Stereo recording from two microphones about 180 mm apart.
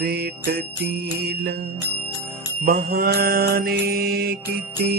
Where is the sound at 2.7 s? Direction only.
60° right (ahead or behind).